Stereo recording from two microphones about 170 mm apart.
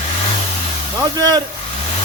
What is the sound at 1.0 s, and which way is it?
Speech, 25° right (ahead or behind).